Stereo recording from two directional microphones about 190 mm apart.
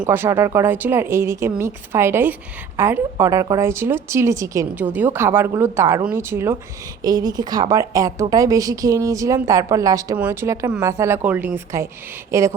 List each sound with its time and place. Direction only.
0.1 s a woman's voice: 10° right (ahead or behind)